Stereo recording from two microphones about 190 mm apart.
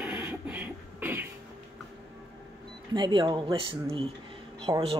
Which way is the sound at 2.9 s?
20° right (ahead or behind).